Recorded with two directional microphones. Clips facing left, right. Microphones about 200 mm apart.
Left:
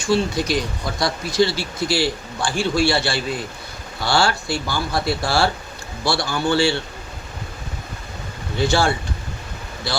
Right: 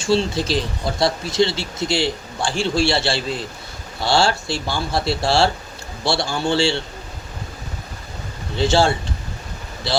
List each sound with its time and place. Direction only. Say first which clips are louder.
0.0 s speech: right 1 dB; 30° right (ahead or behind)
8.5 s speech: right 2 dB; 25° right (ahead or behind)